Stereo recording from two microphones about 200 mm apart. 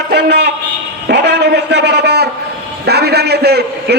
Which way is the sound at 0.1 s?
55° right (ahead or behind).